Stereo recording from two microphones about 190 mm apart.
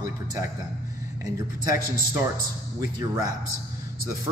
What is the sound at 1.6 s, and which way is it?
Speech, 20° right (ahead or behind).